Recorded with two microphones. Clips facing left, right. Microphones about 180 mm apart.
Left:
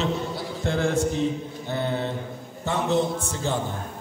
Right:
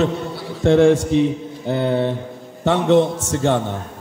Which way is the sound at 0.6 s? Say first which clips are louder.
Right 11 dB; 80° right.